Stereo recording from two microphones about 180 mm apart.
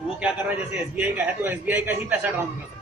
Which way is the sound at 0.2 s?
5° right (ahead or behind).